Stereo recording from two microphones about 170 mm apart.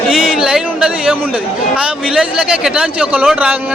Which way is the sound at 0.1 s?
Centre (ahead or behind).